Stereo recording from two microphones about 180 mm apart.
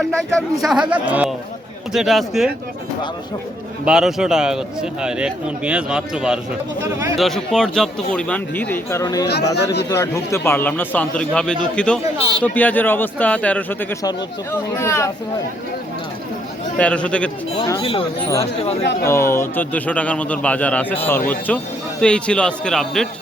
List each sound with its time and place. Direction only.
0.0 s a man's voice: 5° left (ahead or behind)
3.8 s a man's voice: 5° right (ahead or behind); by 9.2 s 15° left (ahead or behind)
9.2 s speech: 70° left (ahead or behind)
9.9 s a man's voice: 15° left (ahead or behind)
14.8 s a man's voice: 15° left (ahead or behind)
16.7 s a man's voice: 5° left (ahead or behind)
17.7 s speech: 30° left (ahead or behind)
19.0 s a man's voice: 15° left (ahead or behind)